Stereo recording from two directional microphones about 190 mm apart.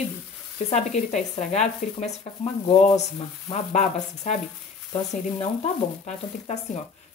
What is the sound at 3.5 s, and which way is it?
Speech, 35° left (ahead or behind).